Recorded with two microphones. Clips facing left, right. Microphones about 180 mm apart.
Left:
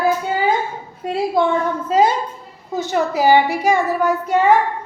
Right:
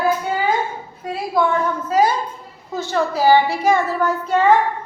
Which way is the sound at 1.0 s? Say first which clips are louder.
Left 2 dB; 25° left (ahead or behind).